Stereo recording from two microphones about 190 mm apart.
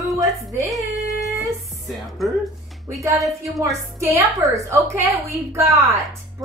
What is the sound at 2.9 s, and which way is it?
A woman's voice, 15° right (ahead or behind).